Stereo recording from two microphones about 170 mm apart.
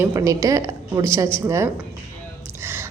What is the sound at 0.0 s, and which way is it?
A woman's voice, 20° right (ahead or behind).